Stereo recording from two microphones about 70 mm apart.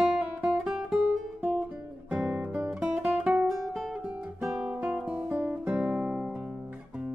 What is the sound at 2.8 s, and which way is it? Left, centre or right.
Music, centre.